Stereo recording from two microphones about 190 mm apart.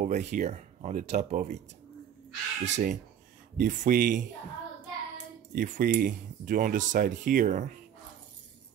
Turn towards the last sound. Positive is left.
turn(degrees=-40)  # may be behind; listen again after turning